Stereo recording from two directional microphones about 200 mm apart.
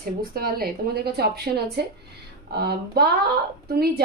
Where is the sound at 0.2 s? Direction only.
50° right (ahead or behind).